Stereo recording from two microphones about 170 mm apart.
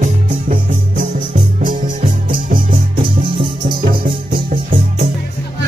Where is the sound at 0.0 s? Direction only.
50° right (ahead or behind).